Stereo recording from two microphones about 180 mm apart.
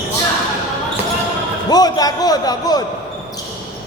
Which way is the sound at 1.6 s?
20° left (ahead or behind).